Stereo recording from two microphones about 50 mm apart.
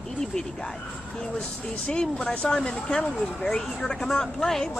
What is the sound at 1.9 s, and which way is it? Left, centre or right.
A woman's voice, centre.